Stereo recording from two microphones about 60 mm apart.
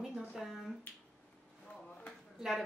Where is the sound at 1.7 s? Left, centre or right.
Left.